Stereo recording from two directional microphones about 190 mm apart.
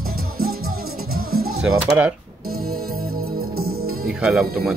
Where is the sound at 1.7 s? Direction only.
5° right (ahead or behind).